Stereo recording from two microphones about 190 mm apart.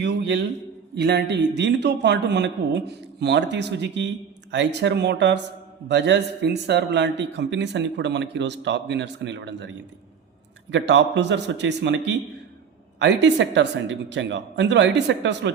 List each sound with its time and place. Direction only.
0.0 s a man's voice: 65° right (ahead or behind)